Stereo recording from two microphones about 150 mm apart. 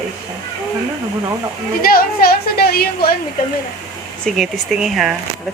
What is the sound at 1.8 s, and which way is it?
A woman's voice, 80° left.